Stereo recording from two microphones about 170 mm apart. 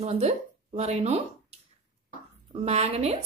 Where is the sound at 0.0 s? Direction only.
40° right (ahead or behind).